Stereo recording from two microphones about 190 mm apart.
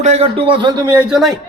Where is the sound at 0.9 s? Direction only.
5° right (ahead or behind).